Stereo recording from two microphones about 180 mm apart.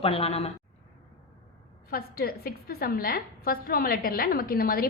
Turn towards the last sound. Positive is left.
turn(degrees=55)  # may be behind; listen again after turning